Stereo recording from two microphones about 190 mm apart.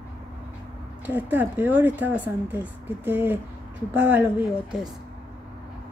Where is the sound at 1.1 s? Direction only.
10° right (ahead or behind).